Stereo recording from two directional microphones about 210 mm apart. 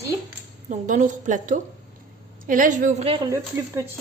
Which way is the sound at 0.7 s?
35° right (ahead or behind).